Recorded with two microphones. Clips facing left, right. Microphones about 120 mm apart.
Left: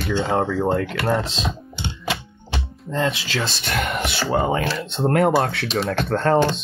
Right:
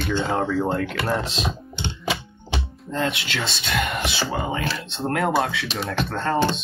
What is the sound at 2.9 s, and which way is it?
Speech, 30° left (ahead or behind).